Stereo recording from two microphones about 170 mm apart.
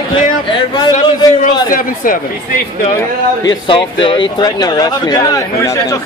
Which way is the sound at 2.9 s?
20° left (ahead or behind).